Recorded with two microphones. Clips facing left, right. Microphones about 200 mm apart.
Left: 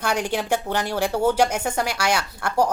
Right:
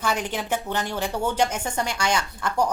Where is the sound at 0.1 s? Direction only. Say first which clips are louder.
Left 5 dB; 10° left (ahead or behind).